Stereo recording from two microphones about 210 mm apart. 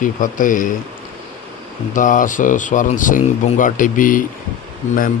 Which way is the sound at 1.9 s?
40° left (ahead or behind).